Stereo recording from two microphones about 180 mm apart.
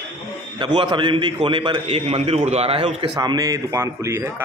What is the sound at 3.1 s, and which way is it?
A man's voice, 20° right (ahead or behind).